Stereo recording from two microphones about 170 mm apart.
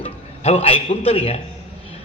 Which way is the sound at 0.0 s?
35° left (ahead or behind).